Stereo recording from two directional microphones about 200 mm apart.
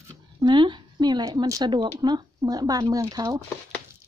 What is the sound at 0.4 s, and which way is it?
Speech, 25° right (ahead or behind).